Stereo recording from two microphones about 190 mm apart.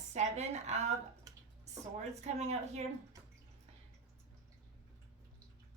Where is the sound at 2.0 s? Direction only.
35° right (ahead or behind).